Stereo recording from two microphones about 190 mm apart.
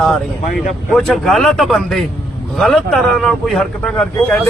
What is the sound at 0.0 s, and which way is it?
Speech, centre (ahead or behind).